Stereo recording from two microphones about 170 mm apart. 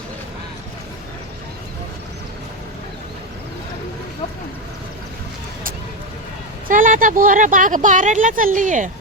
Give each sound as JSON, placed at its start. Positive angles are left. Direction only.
{"t": 6.7, "sound": "speech", "side_deg": -50}